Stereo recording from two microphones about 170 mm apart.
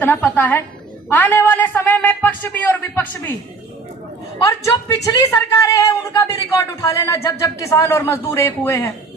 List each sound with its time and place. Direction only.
0.0 s a man's voice: 10° left (ahead or behind)
4.4 s a woman's voice: 20° left (ahead or behind)